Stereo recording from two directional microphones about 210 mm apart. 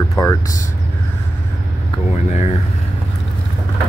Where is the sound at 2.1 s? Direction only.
30° left (ahead or behind).